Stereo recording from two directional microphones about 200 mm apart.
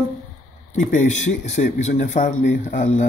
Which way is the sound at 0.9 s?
35° left (ahead or behind).